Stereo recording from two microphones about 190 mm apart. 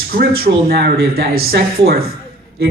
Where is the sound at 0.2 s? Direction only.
55° right (ahead or behind).